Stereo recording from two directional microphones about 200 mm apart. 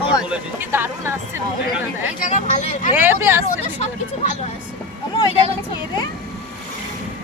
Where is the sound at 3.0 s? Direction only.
10° right (ahead or behind).